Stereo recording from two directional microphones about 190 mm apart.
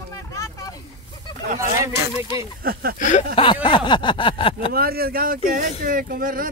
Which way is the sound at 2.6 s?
50° right (ahead or behind).